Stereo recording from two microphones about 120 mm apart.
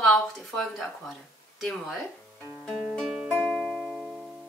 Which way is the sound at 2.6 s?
5° left (ahead or behind).